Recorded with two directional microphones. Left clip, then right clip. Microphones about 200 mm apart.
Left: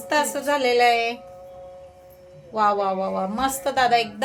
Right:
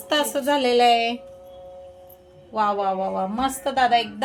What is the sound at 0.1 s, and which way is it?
A woman's voice, 15° right (ahead or behind).